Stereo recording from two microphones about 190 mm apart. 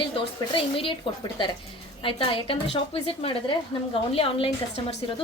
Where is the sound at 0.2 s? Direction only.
30° left (ahead or behind).